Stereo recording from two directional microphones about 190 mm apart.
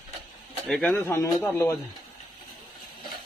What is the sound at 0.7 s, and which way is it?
A man's voice, centre (ahead or behind).